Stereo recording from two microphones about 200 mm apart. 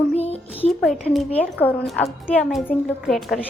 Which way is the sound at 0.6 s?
Centre (ahead or behind).